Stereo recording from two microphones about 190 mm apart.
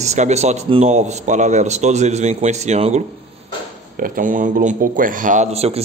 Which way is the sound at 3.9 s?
50° right (ahead or behind).